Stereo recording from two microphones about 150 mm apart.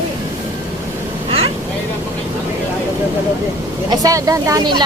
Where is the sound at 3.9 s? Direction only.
25° right (ahead or behind).